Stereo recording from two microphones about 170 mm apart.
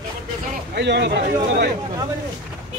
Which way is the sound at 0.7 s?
90° right.